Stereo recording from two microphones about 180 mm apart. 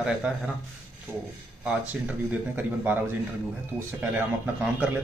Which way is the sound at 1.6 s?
10° right (ahead or behind).